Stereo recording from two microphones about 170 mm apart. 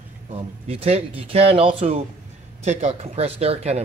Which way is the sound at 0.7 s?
35° right (ahead or behind).